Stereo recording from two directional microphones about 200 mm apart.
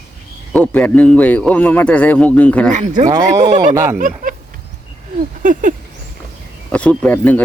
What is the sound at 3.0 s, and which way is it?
Speech, 20° right (ahead or behind).